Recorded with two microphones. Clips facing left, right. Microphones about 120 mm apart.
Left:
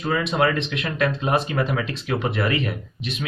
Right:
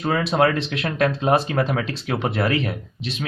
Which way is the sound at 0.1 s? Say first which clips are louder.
Right 2 dB; 35° right (ahead or behind).